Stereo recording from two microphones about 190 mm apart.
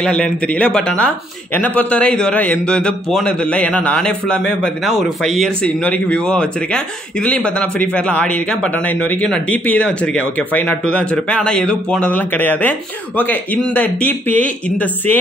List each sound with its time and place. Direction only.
0.0 s speech: 5° left (ahead or behind)